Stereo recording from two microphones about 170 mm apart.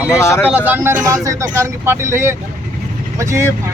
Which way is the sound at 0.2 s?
15° left (ahead or behind).